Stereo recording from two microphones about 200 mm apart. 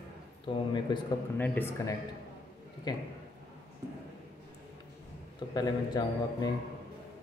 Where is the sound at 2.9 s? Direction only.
20° left (ahead or behind).